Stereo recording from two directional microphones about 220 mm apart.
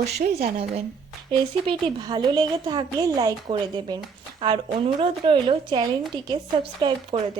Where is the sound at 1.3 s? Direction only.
20° right (ahead or behind).